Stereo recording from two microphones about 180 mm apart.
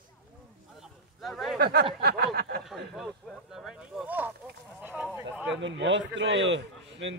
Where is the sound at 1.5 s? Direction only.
60° right (ahead or behind).